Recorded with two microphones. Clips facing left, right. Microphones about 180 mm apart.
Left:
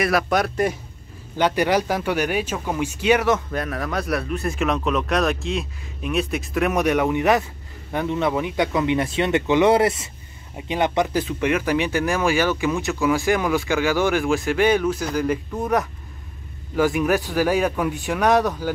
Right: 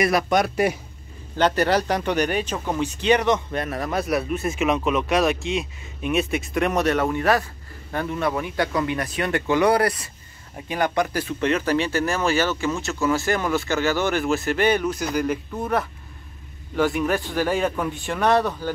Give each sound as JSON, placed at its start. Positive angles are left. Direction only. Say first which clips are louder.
{"t": 0.0, "sound": "speech", "louder": "even", "side_deg": 0}
{"t": 1.3, "sound": "speech", "louder": "even", "side_deg": 10}
{"t": 14.2, "sound": "speech", "louder": "left 1 dB", "side_deg": -5}
{"t": 14.5, "sound": "speech", "louder": "left 3 dB", "side_deg": 10}
{"t": 15.6, "sound": "speech", "louder": "left 2 dB", "side_deg": -5}
{"t": 16.7, "sound": "speech", "louder": "left 2 dB", "side_deg": 5}